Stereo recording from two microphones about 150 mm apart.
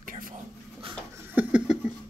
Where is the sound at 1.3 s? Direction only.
10° right (ahead or behind).